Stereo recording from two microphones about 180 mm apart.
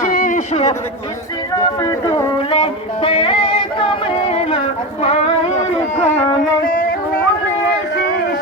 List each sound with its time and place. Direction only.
0.0 s a sound: 50° left (ahead or behind)
2.0 s music: 25° left (ahead or behind)
6.0 s music: 35° left (ahead or behind)
6.7 s music: 50° left (ahead or behind)
7.9 s music: 80° left